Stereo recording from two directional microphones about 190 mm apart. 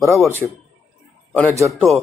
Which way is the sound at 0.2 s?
10° left (ahead or behind).